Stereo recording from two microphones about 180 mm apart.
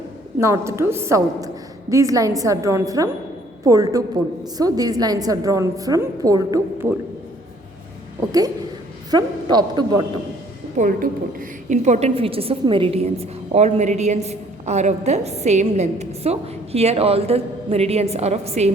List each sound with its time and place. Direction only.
0.3 s a woman's voice: 15° right (ahead or behind)
8.3 s a woman's voice: 20° right (ahead or behind)
10.8 s a woman's voice: 50° right (ahead or behind)